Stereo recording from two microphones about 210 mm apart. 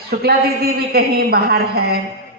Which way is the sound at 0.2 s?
50° right (ahead or behind).